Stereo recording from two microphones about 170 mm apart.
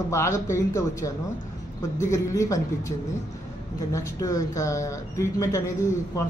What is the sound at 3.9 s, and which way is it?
Speech, 20° left (ahead or behind).